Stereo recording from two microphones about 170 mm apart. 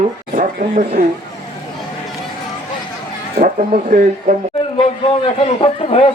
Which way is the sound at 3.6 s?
55° right (ahead or behind).